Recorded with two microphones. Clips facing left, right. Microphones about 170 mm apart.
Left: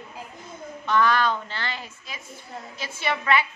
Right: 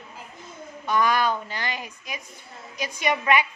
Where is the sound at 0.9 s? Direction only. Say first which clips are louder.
Left 1 dB; 10° right (ahead or behind).